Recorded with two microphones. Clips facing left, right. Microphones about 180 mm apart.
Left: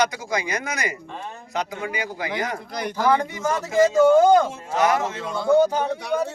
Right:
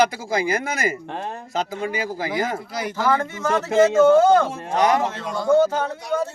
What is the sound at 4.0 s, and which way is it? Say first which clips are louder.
A man's voice: left 1 dB; 15° left (ahead or behind).